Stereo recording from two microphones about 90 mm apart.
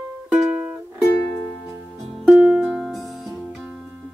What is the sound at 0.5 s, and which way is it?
Music, 20° right (ahead or behind).